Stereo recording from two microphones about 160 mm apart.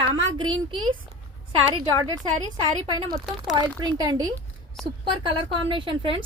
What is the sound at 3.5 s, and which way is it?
A woman's voice, 25° right (ahead or behind).